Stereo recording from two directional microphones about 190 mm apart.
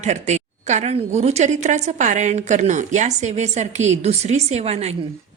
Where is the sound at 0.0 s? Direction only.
40° right (ahead or behind).